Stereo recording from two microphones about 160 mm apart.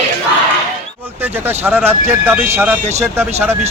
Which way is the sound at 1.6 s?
15° right (ahead or behind).